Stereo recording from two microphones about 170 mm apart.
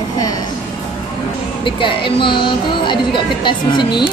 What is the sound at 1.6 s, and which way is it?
Speech, 30° left (ahead or behind).